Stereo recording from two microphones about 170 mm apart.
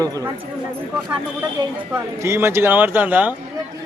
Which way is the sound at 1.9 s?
15° right (ahead or behind).